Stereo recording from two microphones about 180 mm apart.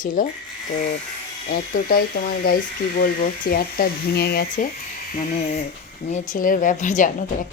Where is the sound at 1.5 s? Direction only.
55° left (ahead or behind).